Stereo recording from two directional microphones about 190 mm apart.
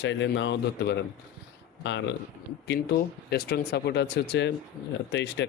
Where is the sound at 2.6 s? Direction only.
65° left (ahead or behind).